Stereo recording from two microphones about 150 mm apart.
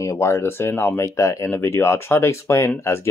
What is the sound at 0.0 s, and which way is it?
Speech, 20° left (ahead or behind).